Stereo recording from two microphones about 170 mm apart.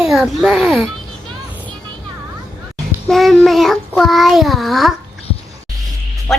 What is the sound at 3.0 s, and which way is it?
A woman's voice, centre (ahead or behind).